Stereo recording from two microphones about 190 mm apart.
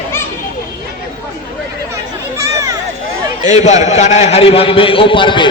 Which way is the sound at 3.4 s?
40° left (ahead or behind).